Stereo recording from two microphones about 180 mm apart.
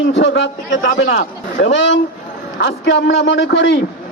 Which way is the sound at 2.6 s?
70° left (ahead or behind).